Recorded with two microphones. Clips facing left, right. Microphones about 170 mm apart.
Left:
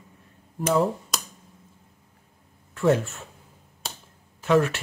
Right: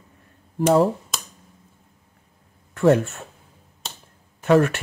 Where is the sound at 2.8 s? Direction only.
60° right (ahead or behind).